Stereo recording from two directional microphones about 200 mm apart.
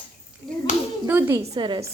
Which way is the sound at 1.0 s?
10° right (ahead or behind).